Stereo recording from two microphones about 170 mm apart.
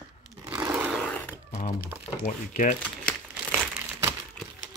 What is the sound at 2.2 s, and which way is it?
Speech, 45° left (ahead or behind).